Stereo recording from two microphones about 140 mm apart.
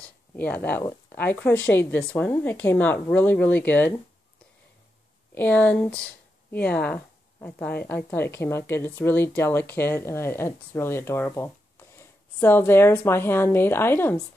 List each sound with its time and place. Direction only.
0.0 s speech: 10° left (ahead or behind)
5.3 s speech: 15° left (ahead or behind)